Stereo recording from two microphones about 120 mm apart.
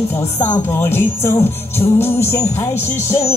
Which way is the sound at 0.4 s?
20° left (ahead or behind).